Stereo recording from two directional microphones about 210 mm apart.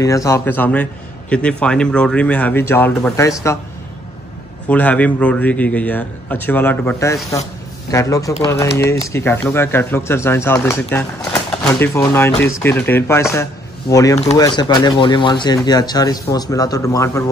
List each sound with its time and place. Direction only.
0.0 s speech: 15° left (ahead or behind)
4.6 s speech: 5° left (ahead or behind)